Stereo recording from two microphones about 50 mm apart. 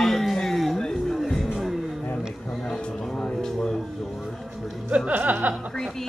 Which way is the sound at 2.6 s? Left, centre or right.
Centre.